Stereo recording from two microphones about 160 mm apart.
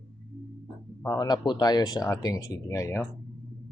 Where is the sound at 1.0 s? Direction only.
20° left (ahead or behind).